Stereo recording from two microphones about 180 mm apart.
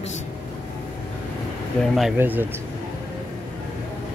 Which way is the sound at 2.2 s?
10° right (ahead or behind).